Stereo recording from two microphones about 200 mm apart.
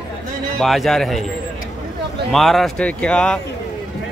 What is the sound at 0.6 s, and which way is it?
Speech, centre (ahead or behind).